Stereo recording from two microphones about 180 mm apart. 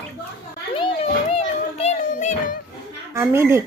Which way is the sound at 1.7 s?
40° left (ahead or behind).